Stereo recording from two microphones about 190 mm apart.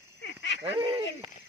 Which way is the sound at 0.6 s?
30° right (ahead or behind).